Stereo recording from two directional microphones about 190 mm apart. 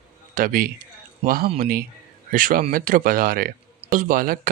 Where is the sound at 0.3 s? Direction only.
50° right (ahead or behind).